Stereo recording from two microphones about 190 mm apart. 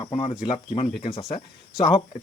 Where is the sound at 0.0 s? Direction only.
30° left (ahead or behind).